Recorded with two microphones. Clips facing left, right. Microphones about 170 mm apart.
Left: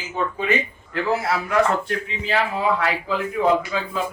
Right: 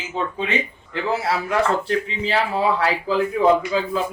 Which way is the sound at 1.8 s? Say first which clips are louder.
Right 3 dB; 30° right (ahead or behind).